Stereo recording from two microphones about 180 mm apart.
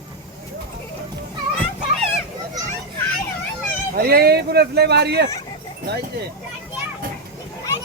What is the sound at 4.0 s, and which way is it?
Speech, 60° right (ahead or behind).